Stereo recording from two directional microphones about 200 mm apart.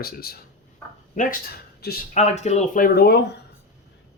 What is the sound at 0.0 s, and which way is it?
Speech, 50° left (ahead or behind).